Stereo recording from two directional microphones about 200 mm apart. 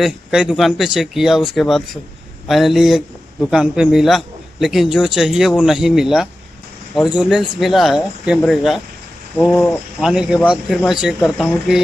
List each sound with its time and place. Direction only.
0.0 s speech: 5° right (ahead or behind)